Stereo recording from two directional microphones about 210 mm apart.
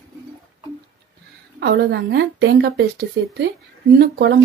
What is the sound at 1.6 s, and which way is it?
A woman's voice, 50° right (ahead or behind).